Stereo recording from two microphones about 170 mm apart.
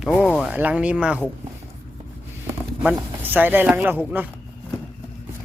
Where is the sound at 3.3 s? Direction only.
10° right (ahead or behind).